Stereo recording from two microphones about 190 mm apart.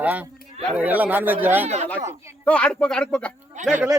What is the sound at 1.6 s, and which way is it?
Speech, 35° right (ahead or behind).